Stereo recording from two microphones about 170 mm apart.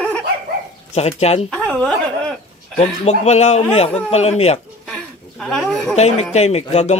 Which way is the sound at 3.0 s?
40° left (ahead or behind).